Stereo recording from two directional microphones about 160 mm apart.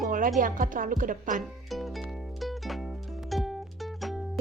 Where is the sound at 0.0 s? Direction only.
60° right (ahead or behind).